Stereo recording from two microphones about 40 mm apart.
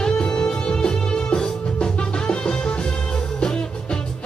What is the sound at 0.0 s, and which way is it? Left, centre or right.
Music, left.